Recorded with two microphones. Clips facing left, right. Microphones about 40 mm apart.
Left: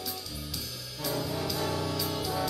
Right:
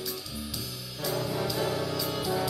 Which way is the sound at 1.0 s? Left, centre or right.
Centre.